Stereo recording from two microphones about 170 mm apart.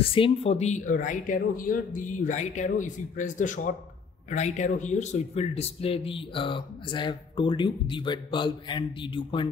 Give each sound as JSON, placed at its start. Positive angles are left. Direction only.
{"t": 0.0, "sound": "speech", "side_deg": 35}